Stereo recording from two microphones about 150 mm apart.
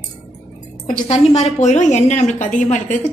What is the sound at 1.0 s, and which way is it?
A woman's voice, 45° left (ahead or behind).